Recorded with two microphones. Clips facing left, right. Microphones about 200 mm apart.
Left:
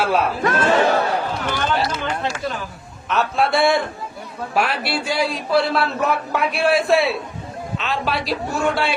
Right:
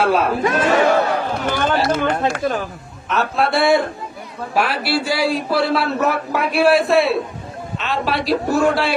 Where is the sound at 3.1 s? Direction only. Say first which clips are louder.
Even; centre (ahead or behind).